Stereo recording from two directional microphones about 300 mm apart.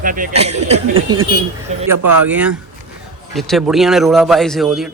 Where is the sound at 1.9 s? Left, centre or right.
Right.